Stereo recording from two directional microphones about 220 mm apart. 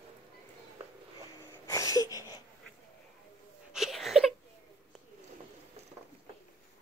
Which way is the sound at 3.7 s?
Centre (ahead or behind).